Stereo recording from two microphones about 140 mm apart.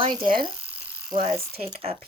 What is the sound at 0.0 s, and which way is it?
Speech, 35° right (ahead or behind).